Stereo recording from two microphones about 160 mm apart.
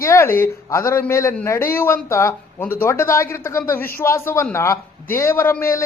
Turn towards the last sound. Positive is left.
turn(degrees=15)  # may be behind; listen again after turning